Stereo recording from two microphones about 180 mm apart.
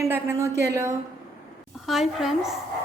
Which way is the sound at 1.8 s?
Centre (ahead or behind).